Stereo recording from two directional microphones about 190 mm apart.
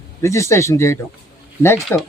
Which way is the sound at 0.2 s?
15° left (ahead or behind).